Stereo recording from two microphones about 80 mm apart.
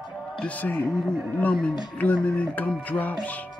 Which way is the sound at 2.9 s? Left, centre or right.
Centre.